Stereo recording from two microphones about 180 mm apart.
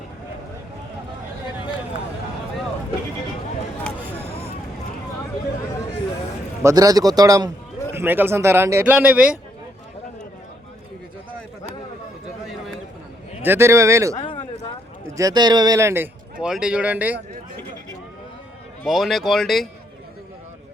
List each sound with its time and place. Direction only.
6.6 s a man's voice: 15° right (ahead or behind)
12.5 s a sound: centre (ahead or behind)
13.4 s a man's voice: 15° right (ahead or behind)
14.2 s a sound: 30° left (ahead or behind)
15.1 s a man's voice: 20° right (ahead or behind)
18.8 s speech: centre (ahead or behind)